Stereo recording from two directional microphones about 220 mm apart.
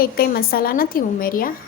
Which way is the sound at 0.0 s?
45° left (ahead or behind).